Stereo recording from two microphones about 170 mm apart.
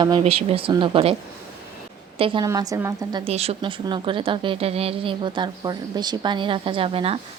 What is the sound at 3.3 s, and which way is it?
A woman's voice, 35° right (ahead or behind).